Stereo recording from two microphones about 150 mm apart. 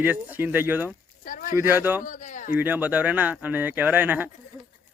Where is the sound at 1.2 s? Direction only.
65° left (ahead or behind).